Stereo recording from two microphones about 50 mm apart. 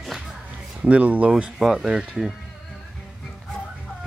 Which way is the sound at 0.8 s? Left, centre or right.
Right.